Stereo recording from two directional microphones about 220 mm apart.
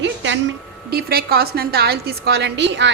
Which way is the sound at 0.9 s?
45° right (ahead or behind).